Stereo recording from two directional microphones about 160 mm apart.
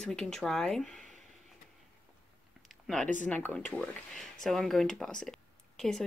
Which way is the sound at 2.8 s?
5° left (ahead or behind).